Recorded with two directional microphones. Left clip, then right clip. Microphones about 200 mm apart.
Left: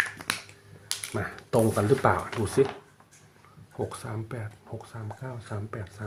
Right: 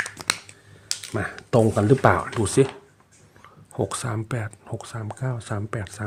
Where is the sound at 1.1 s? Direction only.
45° right (ahead or behind).